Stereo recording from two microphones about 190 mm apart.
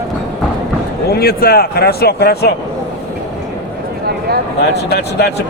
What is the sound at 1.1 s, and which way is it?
Speech, 55° left (ahead or behind).